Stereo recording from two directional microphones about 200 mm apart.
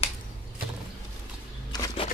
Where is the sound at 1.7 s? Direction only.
20° left (ahead or behind).